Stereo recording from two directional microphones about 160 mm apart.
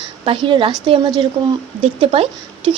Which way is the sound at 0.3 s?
35° right (ahead or behind).